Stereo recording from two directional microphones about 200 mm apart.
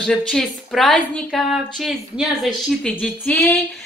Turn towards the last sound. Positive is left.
turn(degrees=5)  # may be behind; listen again after turning